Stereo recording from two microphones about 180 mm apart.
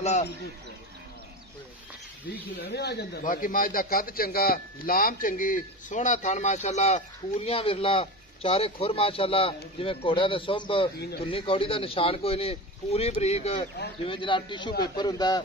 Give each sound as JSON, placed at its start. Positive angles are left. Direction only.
{"t": 0.0, "sound": "a sound", "side_deg": 35}
{"t": 2.6, "sound": "a man's voice", "side_deg": 65}
{"t": 11.0, "sound": "speech", "side_deg": 65}
{"t": 11.2, "sound": "speech", "side_deg": 30}